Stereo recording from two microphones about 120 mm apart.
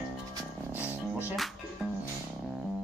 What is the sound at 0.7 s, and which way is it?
Music, 20° left (ahead or behind).